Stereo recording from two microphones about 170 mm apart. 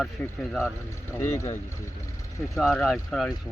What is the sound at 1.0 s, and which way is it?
Speech, 15° left (ahead or behind).